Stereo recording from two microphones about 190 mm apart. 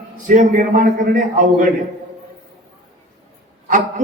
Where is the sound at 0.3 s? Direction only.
45° right (ahead or behind).